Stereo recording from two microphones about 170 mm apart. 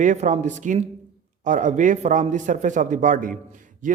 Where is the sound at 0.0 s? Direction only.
45° right (ahead or behind).